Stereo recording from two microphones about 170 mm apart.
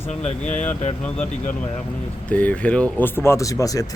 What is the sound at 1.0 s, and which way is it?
Speech, 5° left (ahead or behind).